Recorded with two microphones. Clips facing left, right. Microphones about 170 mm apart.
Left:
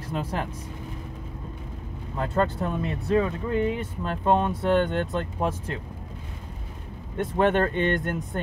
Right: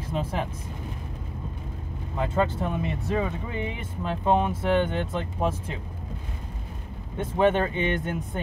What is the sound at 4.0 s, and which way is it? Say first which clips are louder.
Speech: even; 10° right (ahead or behind).